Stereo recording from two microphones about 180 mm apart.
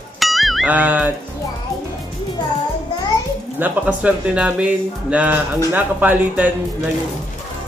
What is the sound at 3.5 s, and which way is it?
Speech, 10° right (ahead or behind).